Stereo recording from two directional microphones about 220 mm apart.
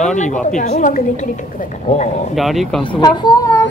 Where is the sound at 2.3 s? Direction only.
Centre (ahead or behind).